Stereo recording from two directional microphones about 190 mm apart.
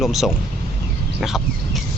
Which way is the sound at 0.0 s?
Centre (ahead or behind).